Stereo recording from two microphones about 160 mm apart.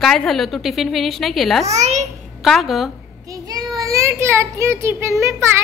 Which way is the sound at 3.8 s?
20° right (ahead or behind).